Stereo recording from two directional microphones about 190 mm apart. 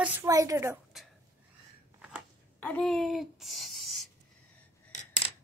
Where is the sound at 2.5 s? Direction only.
10° left (ahead or behind).